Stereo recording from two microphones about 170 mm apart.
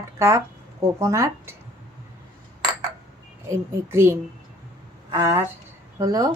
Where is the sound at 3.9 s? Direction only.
15° right (ahead or behind).